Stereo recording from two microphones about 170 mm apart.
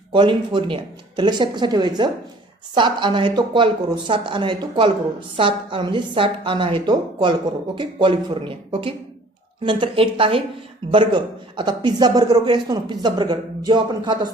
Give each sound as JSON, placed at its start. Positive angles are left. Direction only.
{"t": 0.1, "sound": "a man's voice", "side_deg": -30}